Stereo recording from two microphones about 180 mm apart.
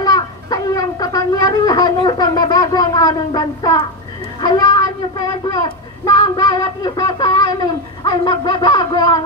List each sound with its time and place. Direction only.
0.0 s music: 20° left (ahead or behind)
4.4 s a woman's voice: 20° left (ahead or behind)